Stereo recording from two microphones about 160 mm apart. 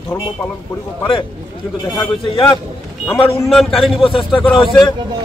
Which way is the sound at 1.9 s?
30° left (ahead or behind).